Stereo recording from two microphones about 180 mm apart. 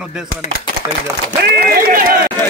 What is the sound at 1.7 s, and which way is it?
Speech, 55° right (ahead or behind).